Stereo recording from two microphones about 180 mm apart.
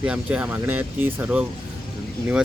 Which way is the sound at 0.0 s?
5° right (ahead or behind).